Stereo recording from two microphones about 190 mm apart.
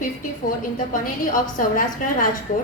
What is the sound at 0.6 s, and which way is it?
A woman's voice, 45° left (ahead or behind).